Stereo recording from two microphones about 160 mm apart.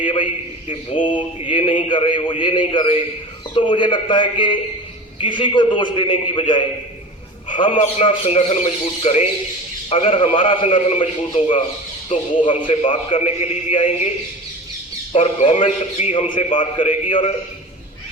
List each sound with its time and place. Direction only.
0.0 s a man's voice: 30° left (ahead or behind)
15.1 s a man's voice: 40° left (ahead or behind)